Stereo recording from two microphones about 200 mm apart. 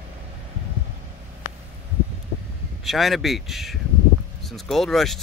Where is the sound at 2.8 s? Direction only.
Centre (ahead or behind).